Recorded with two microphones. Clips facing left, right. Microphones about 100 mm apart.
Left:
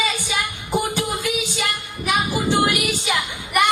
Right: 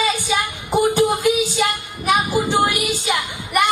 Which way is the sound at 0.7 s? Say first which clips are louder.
Right 7 dB; 15° right (ahead or behind).